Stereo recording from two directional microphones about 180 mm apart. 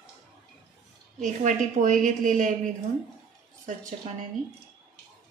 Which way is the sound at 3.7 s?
45° right (ahead or behind).